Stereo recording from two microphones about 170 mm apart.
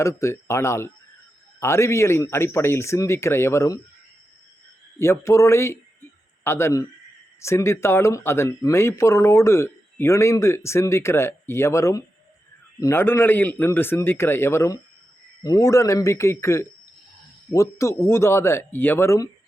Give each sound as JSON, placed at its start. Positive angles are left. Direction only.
{"t": 0.0, "sound": "speech", "side_deg": 15}
{"t": 4.9, "sound": "a man's voice", "side_deg": 15}